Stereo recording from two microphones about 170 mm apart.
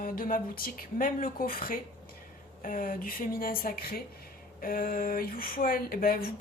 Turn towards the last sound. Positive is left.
turn(degrees=60)  # may be behind; listen again after turning